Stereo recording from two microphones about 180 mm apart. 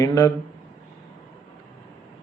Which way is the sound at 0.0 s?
20° left (ahead or behind).